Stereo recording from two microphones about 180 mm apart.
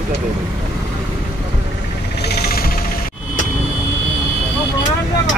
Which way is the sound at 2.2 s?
60° left (ahead or behind).